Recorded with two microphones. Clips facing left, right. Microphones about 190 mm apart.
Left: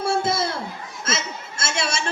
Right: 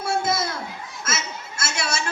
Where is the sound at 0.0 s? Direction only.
30° left (ahead or behind).